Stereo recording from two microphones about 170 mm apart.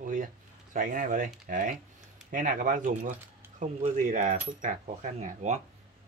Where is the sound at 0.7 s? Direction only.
55° right (ahead or behind).